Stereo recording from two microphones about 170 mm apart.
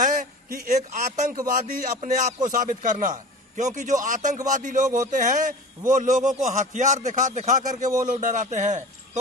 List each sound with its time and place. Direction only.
0.0 s a man's voice: 50° right (ahead or behind)